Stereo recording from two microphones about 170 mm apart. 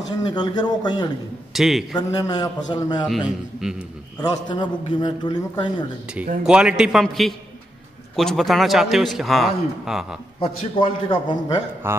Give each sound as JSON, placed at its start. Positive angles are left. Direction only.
{"t": 0.3, "sound": "a man's voice", "side_deg": 25}
{"t": 1.5, "sound": "a man's voice", "side_deg": 0}
{"t": 2.0, "sound": "a man's voice", "side_deg": 20}
{"t": 3.6, "sound": "a man's voice", "side_deg": -5}
{"t": 4.2, "sound": "a man's voice", "side_deg": 25}
{"t": 6.4, "sound": "a man's voice", "side_deg": -5}
{"t": 10.4, "sound": "a man's voice", "side_deg": 30}
{"t": 11.8, "sound": "speech", "side_deg": -15}